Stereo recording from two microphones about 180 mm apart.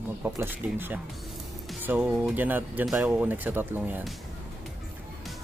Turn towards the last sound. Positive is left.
turn(degrees=-10)  # may be behind; listen again after turning